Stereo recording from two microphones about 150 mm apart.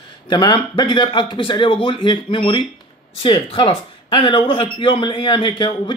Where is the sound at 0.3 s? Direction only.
30° left (ahead or behind).